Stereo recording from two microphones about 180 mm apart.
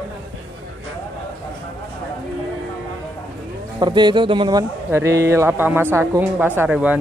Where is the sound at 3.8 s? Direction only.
25° right (ahead or behind); by 7.0 s 5° right (ahead or behind).